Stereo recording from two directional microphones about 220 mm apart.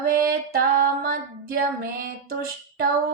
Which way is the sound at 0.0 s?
40° right (ahead or behind).